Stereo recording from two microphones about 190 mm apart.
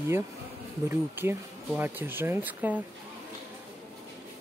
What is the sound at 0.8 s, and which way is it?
Speech, 10° right (ahead or behind).